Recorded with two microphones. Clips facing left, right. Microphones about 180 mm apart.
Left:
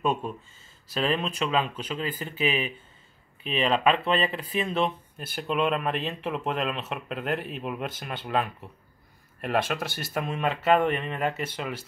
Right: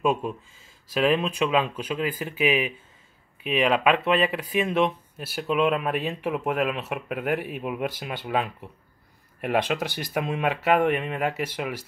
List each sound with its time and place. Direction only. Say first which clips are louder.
0.0 s speech: right 3 dB; 5° right (ahead or behind)